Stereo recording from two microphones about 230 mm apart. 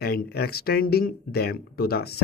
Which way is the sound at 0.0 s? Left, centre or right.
Left.